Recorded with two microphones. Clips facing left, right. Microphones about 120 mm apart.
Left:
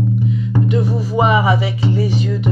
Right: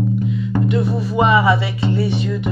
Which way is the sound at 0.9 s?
15° left (ahead or behind).